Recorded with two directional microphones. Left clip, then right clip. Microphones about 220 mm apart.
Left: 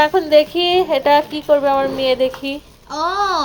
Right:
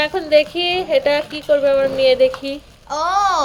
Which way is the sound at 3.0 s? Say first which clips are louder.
Right 1 dB; 35° right (ahead or behind).